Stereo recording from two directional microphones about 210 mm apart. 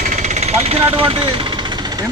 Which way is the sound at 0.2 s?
35° right (ahead or behind).